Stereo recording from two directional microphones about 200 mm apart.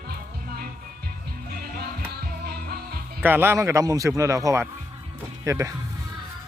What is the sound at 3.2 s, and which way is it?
A man's voice, 10° right (ahead or behind).